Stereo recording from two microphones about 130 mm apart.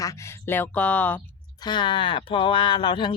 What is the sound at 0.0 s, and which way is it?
Speech, 25° left (ahead or behind).